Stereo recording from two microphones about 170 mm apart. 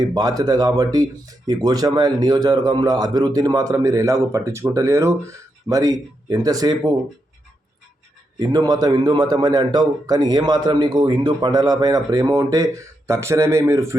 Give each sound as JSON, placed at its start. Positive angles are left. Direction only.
{"t": 0.1, "sound": "a man's voice", "side_deg": -20}
{"t": 8.4, "sound": "a man's voice", "side_deg": -20}